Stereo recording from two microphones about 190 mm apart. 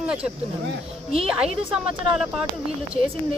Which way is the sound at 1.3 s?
5° right (ahead or behind).